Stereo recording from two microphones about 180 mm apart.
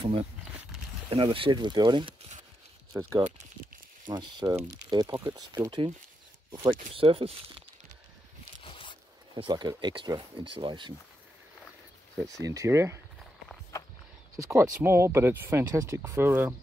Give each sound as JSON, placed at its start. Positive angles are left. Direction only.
{"t": 0.0, "sound": "speech", "side_deg": -30}
{"t": 8.6, "sound": "zipper", "side_deg": 30}
{"t": 9.3, "sound": "speech", "side_deg": -25}
{"t": 12.4, "sound": "speech", "side_deg": -15}
{"t": 14.3, "sound": "speech", "side_deg": -15}